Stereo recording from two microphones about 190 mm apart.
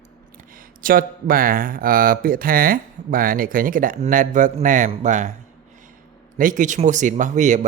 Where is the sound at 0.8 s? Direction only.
50° right (ahead or behind).